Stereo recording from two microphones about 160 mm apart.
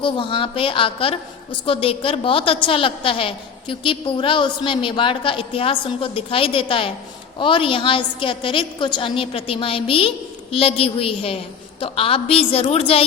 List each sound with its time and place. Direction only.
0.0 s a woman's voice: 30° left (ahead or behind)